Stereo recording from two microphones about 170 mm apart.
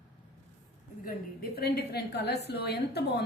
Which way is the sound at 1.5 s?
70° left (ahead or behind).